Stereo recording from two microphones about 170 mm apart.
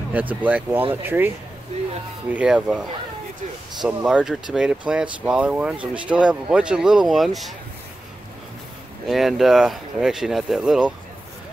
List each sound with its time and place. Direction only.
0.1 s speech: 10° right (ahead or behind)
9.0 s speech: centre (ahead or behind)